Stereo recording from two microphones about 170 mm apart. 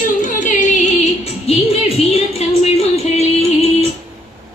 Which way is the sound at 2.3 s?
40° left (ahead or behind).